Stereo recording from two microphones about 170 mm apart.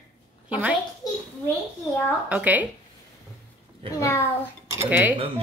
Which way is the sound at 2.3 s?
10° right (ahead or behind).